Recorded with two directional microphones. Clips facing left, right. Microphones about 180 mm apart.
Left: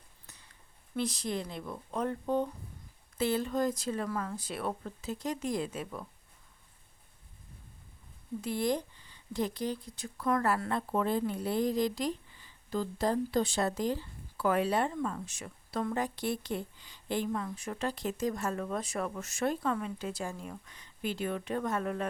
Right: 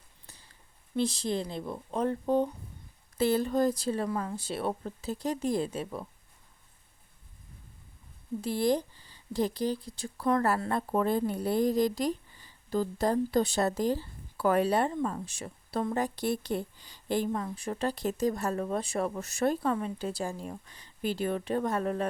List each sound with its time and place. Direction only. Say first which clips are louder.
0.3 s a sound: right 2 dB; 30° right (ahead or behind)
0.9 s speech: right 4 dB; 30° right (ahead or behind)
8.4 s speech: right 4 dB; 35° right (ahead or behind)